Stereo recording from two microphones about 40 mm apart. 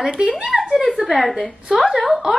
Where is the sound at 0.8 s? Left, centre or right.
Centre.